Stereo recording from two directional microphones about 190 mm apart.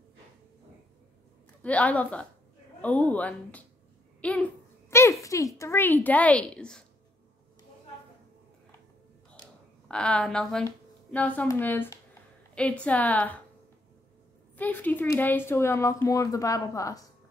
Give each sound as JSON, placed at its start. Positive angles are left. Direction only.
{"t": 1.6, "sound": "a woman's voice", "side_deg": 5}
{"t": 9.8, "sound": "speech", "side_deg": 5}
{"t": 14.6, "sound": "speech", "side_deg": 10}